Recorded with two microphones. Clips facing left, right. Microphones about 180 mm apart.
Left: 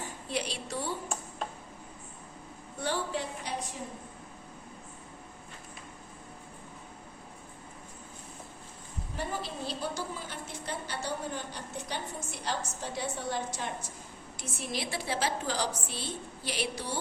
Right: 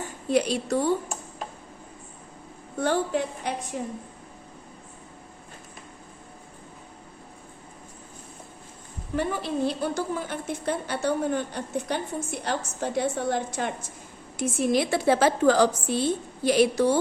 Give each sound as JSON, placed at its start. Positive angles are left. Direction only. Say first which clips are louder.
{"t": 0.3, "sound": "a woman's voice", "louder": "right 12 dB", "side_deg": -45}
{"t": 2.7, "sound": "a woman's voice", "louder": "right 8 dB", "side_deg": -50}
{"t": 9.1, "sound": "a woman's voice", "louder": "right 10 dB", "side_deg": -60}